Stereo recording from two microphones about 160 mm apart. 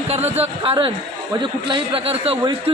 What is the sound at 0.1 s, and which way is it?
A man's voice, 40° right (ahead or behind).